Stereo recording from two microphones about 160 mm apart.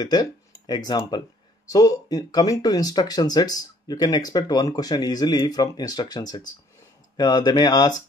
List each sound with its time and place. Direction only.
0.0 s speech: 25° left (ahead or behind)